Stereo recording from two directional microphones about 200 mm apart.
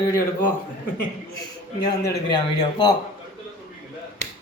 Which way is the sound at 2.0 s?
20° left (ahead or behind).